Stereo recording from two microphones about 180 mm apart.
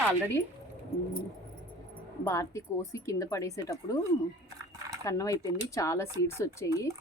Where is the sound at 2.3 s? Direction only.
15° left (ahead or behind).